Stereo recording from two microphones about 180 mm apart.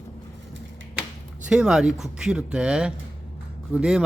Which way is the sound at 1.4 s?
5° right (ahead or behind).